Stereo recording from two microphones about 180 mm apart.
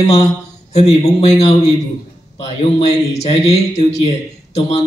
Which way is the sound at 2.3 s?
35° left (ahead or behind).